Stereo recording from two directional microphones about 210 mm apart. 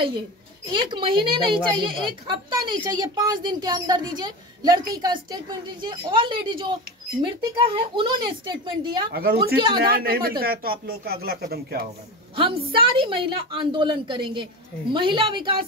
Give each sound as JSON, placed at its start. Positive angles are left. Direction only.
{"t": 0.7, "sound": "a woman's voice", "side_deg": -20}
{"t": 9.1, "sound": "a woman's voice", "side_deg": -45}
{"t": 12.4, "sound": "a woman's voice", "side_deg": -25}